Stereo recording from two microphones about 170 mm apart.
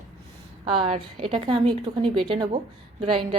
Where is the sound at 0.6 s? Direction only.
30° right (ahead or behind).